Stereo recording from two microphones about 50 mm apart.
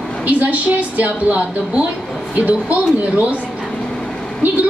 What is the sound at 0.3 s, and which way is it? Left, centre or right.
A woman's voice, right.